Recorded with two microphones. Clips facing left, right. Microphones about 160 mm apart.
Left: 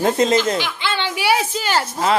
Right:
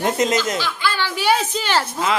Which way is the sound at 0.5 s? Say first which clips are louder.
Even; 20° left (ahead or behind).